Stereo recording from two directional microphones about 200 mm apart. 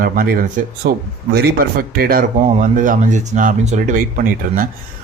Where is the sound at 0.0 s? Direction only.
45° right (ahead or behind).